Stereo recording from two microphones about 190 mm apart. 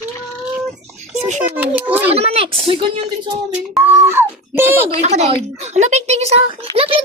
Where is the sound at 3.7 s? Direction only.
10° right (ahead or behind).